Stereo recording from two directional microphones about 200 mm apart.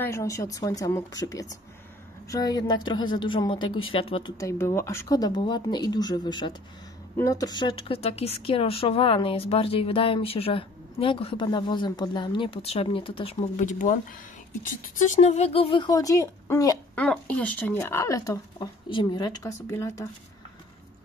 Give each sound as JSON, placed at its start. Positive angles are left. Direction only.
{"t": 0.0, "sound": "a woman's voice", "side_deg": 15}
{"t": 4.4, "sound": "a woman's voice", "side_deg": 15}